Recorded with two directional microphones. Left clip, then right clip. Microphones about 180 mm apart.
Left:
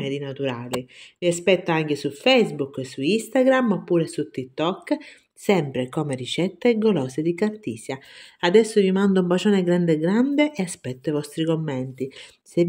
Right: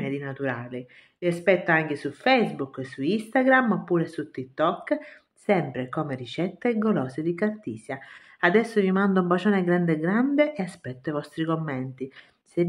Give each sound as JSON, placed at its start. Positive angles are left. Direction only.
{"t": 0.2, "sound": "speech", "side_deg": 40}